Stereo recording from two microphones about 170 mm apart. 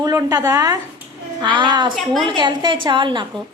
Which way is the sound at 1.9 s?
Centre (ahead or behind).